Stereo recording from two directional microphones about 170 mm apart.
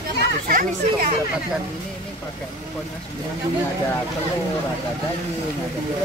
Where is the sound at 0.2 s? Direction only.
55° right (ahead or behind).